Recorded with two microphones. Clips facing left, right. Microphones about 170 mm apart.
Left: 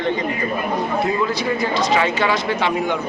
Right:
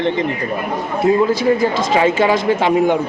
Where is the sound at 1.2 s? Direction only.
50° right (ahead or behind).